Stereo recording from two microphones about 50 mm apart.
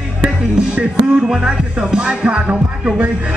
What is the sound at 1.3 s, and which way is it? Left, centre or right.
Music, centre.